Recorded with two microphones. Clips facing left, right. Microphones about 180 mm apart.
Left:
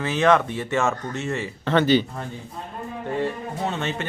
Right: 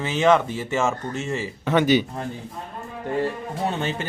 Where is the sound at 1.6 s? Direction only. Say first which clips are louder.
Even; 10° right (ahead or behind).